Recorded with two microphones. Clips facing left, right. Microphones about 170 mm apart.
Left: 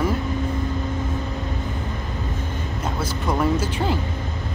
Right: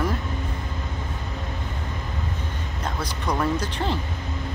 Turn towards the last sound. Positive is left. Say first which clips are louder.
# left 3 dB
turn(degrees=5)  # may be behind; listen again after turning